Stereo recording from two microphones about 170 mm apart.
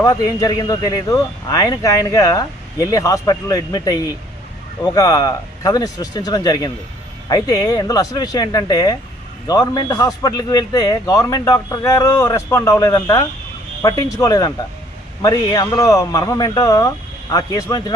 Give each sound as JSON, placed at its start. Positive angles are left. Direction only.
{"t": 0.0, "sound": "speech", "side_deg": 20}